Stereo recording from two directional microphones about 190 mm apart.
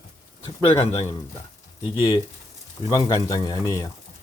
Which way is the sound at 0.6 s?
30° left (ahead or behind).